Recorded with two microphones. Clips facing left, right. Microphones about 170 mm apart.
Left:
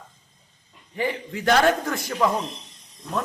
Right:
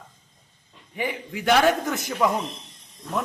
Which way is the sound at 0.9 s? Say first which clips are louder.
Left 2 dB; 15° right (ahead or behind).